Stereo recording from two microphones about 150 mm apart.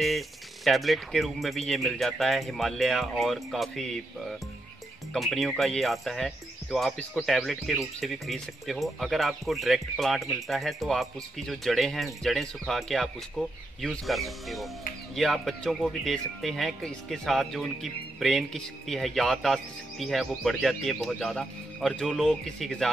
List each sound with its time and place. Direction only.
0.7 s speech: centre (ahead or behind)